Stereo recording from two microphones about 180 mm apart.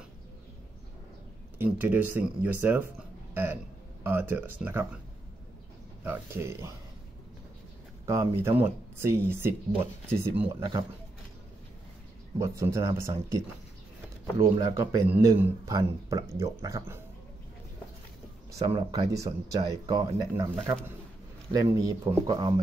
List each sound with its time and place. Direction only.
1.6 s speech: 10° right (ahead or behind)
6.0 s speech: 15° right (ahead or behind)
8.0 s speech: 15° right (ahead or behind)
12.4 s speech: 15° right (ahead or behind)
14.4 s speech: 15° right (ahead or behind)
18.5 s speech: 20° right (ahead or behind)